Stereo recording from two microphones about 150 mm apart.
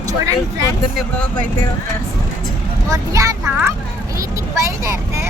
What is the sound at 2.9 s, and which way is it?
Speech, 20° right (ahead or behind).